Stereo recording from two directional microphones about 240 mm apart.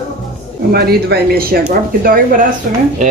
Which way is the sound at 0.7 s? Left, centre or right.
Right.